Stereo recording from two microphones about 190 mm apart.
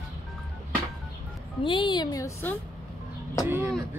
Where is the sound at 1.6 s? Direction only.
25° left (ahead or behind).